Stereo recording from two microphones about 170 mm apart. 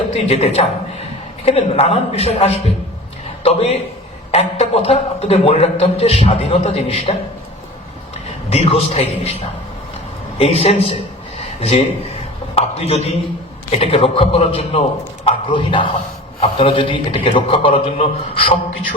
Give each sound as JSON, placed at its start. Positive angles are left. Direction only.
{"t": 0.1, "sound": "a man's voice", "side_deg": 40}
{"t": 8.4, "sound": "a man's voice", "side_deg": 35}